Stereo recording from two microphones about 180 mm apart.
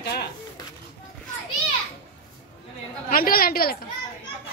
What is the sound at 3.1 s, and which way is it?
Speech, 55° left (ahead or behind).